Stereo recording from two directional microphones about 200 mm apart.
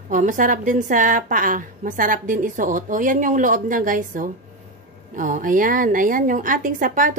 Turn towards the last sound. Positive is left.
turn(degrees=-40)  # may be behind; listen again after turning